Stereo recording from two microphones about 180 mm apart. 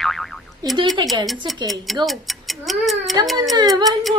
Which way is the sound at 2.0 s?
Centre (ahead or behind).